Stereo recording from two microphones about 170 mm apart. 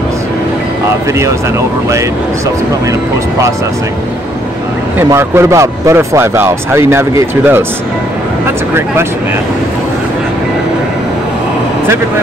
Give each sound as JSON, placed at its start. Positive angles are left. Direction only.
{"t": 5.1, "sound": "speech", "side_deg": -15}